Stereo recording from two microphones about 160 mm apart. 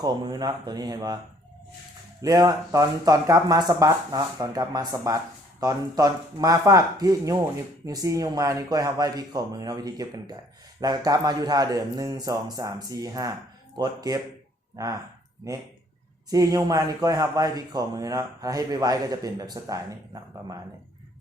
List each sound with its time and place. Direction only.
0.0 s speech: 25° right (ahead or behind)
2.2 s speech: 25° right (ahead or behind)
16.3 s speech: 20° right (ahead or behind)